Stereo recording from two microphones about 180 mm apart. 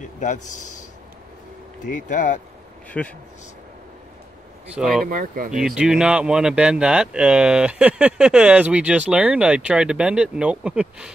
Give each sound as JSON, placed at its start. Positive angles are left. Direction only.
{"t": 0.2, "sound": "speech", "side_deg": 45}
{"t": 1.9, "sound": "speech", "side_deg": 45}
{"t": 2.9, "sound": "speech", "side_deg": 5}
{"t": 4.7, "sound": "speech", "side_deg": 0}
{"t": 5.0, "sound": "speech", "side_deg": -50}
{"t": 5.5, "sound": "speech", "side_deg": -5}